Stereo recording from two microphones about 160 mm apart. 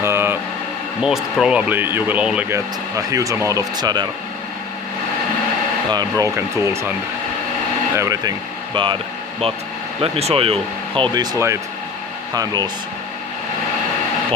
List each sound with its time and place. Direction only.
0.0 s a sound: 15° right (ahead or behind)
1.0 s speech: 5° right (ahead or behind)
2.9 s speech: 20° right (ahead or behind)
5.9 s speech: 20° right (ahead or behind)
7.9 s speech: 20° right (ahead or behind)
8.7 s speech: 30° right (ahead or behind)
10.0 s speech: 40° right (ahead or behind)